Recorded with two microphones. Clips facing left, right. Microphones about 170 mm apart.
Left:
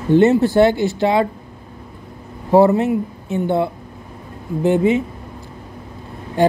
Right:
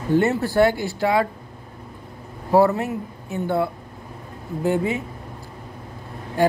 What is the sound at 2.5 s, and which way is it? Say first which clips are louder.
Speech: left 5 dB; 20° left (ahead or behind).